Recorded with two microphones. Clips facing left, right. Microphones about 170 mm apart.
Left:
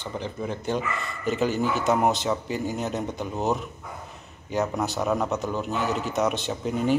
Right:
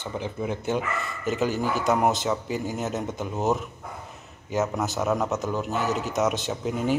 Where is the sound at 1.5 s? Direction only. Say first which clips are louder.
Left 1 dB; 40° right (ahead or behind).